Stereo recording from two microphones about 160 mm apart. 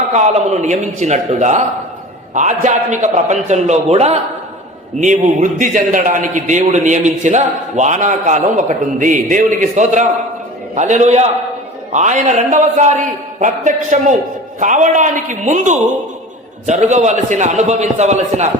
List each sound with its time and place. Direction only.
0.1 s a man's voice: 45° right (ahead or behind)